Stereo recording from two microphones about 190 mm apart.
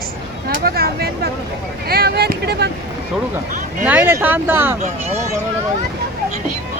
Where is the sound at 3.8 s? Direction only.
10° right (ahead or behind).